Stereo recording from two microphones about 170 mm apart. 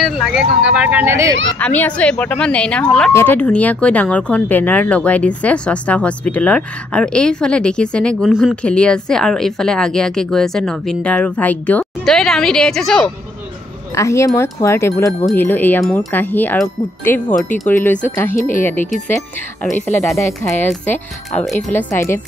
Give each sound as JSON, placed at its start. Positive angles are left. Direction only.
{"t": 0.0, "sound": "speech", "side_deg": -5}
{"t": 1.6, "sound": "speech", "side_deg": 10}
{"t": 8.3, "sound": "speech", "side_deg": -5}
{"t": 8.6, "sound": "speech", "side_deg": 5}
{"t": 13.9, "sound": "speech", "side_deg": 15}
{"t": 18.3, "sound": "speech", "side_deg": 50}
{"t": 18.6, "sound": "speech", "side_deg": 10}
{"t": 20.6, "sound": "speech", "side_deg": 10}